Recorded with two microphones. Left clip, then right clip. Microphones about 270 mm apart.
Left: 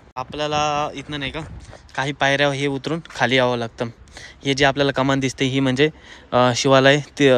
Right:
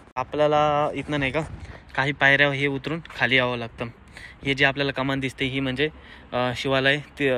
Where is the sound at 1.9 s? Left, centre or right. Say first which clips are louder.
Even; left.